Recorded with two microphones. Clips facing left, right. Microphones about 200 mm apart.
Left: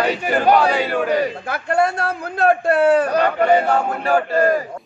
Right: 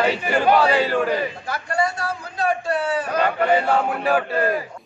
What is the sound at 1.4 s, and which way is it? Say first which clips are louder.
A man's voice: left 5 dB; 55° left (ahead or behind).